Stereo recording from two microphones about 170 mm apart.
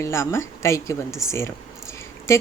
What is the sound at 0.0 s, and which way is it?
Speech, 15° left (ahead or behind).